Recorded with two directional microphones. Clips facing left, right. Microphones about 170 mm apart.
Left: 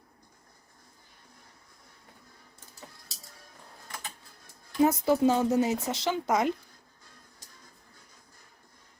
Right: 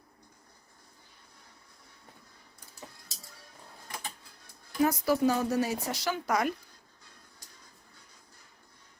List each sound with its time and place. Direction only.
4.8 s speech: 25° left (ahead or behind)